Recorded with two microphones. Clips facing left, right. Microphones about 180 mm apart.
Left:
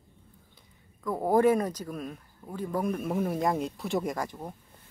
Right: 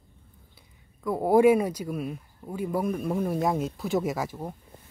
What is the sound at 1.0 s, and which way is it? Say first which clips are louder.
Speech: right 4 dB; 10° right (ahead or behind).